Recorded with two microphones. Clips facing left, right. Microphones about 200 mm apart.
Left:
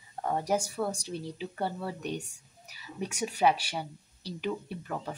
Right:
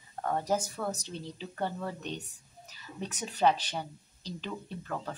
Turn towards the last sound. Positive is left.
turn(degrees=10)  # may be behind; listen again after turning